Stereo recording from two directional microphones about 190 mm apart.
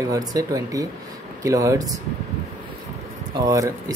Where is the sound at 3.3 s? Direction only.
20° right (ahead or behind).